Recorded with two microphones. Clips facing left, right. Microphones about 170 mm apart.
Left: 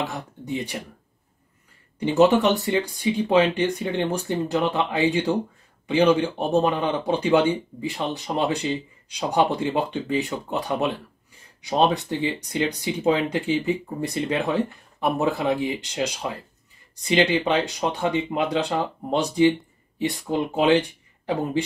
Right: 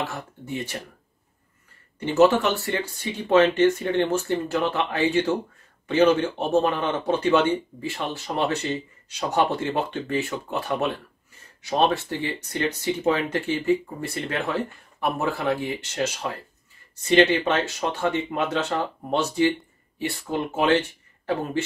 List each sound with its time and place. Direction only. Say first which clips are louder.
0.0 s speech: left 2 dB; 15° left (ahead or behind)
2.0 s speech: left 1 dB; 15° left (ahead or behind)